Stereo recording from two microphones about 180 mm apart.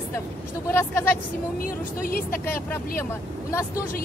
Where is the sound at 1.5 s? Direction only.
50° left (ahead or behind).